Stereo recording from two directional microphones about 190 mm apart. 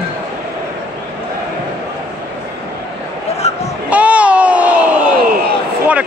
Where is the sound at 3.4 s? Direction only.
35° left (ahead or behind).